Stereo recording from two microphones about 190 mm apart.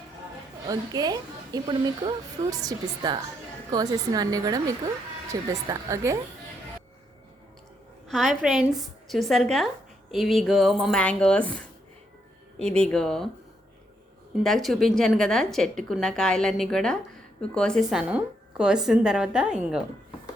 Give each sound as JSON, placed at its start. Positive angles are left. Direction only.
{"t": 0.7, "sound": "a woman's voice", "side_deg": -20}
{"t": 8.0, "sound": "a woman's voice", "side_deg": 0}
{"t": 14.4, "sound": "a woman's voice", "side_deg": 0}